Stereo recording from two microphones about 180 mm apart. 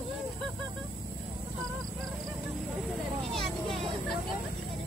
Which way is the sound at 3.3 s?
Centre (ahead or behind).